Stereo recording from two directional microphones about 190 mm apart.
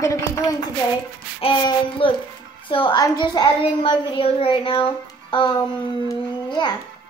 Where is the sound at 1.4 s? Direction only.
25° left (ahead or behind).